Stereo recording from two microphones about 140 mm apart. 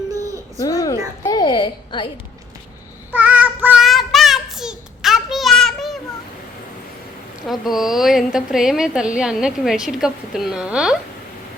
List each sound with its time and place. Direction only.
0.1 s baby cry: 25° right (ahead or behind)
0.6 s a sound: 25° left (ahead or behind)
3.1 s child singing: 10° right (ahead or behind)
3.8 s child singing: centre (ahead or behind)
7.4 s a woman's voice: centre (ahead or behind)